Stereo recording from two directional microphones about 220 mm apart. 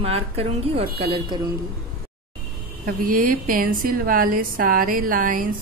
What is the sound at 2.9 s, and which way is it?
A woman's voice, 40° right (ahead or behind).